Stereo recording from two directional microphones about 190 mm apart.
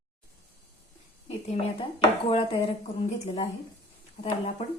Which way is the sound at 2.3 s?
30° left (ahead or behind).